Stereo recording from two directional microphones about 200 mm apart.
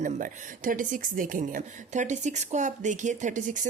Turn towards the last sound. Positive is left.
turn(degrees=-40)  # may be behind; listen again after turning